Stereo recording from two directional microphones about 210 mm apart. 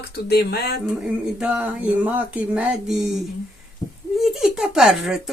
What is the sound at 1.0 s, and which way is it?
Speech, 5° right (ahead or behind).